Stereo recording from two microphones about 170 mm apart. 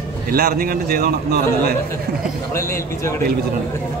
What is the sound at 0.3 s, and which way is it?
A man's voice, 60° right (ahead or behind).